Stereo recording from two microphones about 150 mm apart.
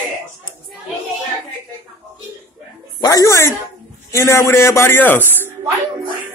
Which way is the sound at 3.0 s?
20° left (ahead or behind).